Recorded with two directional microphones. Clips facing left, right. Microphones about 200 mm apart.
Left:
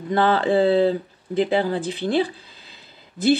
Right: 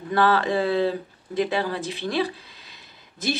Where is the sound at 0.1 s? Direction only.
25° left (ahead or behind).